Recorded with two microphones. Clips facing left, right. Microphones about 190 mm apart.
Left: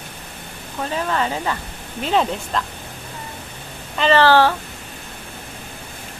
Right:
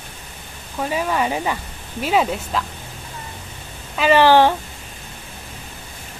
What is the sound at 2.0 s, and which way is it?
Speech, 5° right (ahead or behind).